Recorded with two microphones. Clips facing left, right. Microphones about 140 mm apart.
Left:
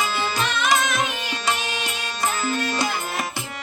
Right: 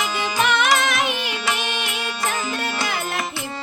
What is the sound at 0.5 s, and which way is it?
Carnatic music, 65° right (ahead or behind).